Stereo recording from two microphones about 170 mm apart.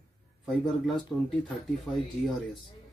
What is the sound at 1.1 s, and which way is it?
Speech, 5° left (ahead or behind).